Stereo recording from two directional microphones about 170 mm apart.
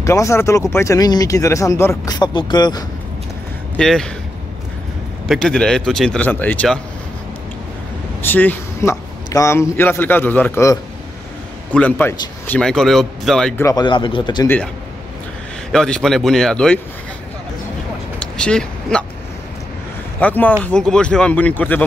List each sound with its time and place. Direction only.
0.0 s speech: 20° left (ahead or behind)
3.7 s speech: 5° left (ahead or behind)
5.3 s speech: 5° left (ahead or behind)
8.2 s a man's voice: 10° left (ahead or behind)
13.6 s speech: 20° left (ahead or behind)
15.7 s speech: 5° left (ahead or behind)
18.4 s speech: 5° left (ahead or behind)
20.2 s a man's voice: 10° left (ahead or behind)